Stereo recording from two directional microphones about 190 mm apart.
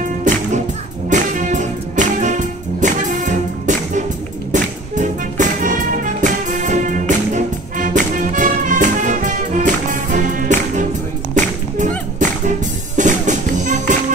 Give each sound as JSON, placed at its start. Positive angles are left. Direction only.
{"t": 0.0, "sound": "music", "side_deg": -40}
{"t": 12.2, "sound": "music", "side_deg": -40}